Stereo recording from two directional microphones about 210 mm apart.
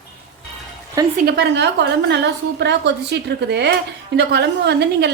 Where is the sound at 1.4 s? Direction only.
55° right (ahead or behind).